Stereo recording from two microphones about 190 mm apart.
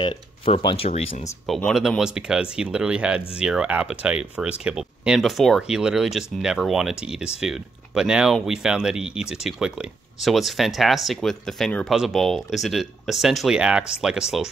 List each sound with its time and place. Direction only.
0.0 s speech: 30° left (ahead or behind)
1.5 s speech: centre (ahead or behind)